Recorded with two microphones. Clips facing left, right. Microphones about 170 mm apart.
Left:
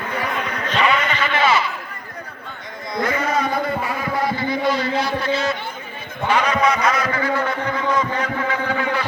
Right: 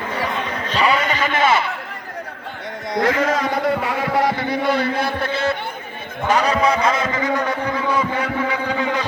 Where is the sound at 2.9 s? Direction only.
90° right; by 5.6 s 55° right (ahead or behind).